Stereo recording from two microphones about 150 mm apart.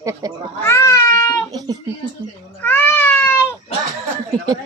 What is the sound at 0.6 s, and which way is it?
Speech, 20° left (ahead or behind).